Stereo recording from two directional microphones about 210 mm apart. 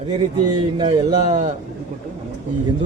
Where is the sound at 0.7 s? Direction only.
20° right (ahead or behind).